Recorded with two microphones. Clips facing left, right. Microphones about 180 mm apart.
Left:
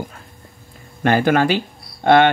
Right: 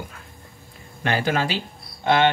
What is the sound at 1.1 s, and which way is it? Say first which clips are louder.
Speech: left 7 dB; 50° left (ahead or behind).